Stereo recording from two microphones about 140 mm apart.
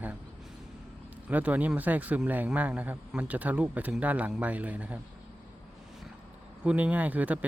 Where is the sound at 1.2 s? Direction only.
10° right (ahead or behind).